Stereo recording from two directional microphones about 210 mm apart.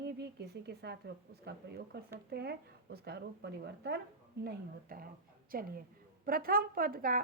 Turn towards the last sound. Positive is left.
turn(degrees=-45)  # may be behind; listen again after turning